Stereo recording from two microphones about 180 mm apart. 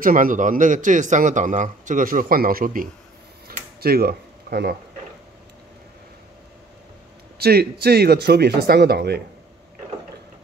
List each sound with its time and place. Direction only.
0.0 s a man's voice: 50° right (ahead or behind)
3.4 s a sound: 60° right (ahead or behind)
7.3 s speech: 60° right (ahead or behind)